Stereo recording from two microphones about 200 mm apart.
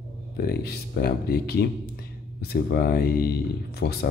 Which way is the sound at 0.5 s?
50° left (ahead or behind).